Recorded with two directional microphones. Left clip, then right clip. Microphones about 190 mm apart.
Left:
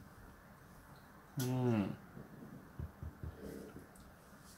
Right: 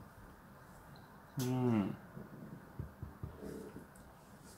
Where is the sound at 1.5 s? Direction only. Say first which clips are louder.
Right 1 dB; 25° left (ahead or behind).